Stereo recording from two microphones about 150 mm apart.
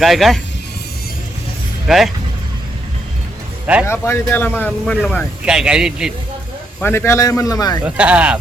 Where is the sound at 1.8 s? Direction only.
Centre (ahead or behind).